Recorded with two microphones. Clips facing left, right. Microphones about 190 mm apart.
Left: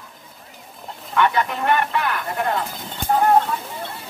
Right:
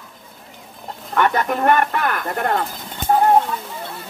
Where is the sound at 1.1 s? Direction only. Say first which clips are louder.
Right 1 dB; 45° right (ahead or behind).